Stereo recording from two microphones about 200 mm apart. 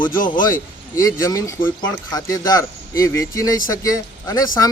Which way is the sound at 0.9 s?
15° left (ahead or behind).